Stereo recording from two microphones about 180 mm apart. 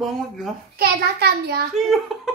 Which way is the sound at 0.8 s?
65° right (ahead or behind).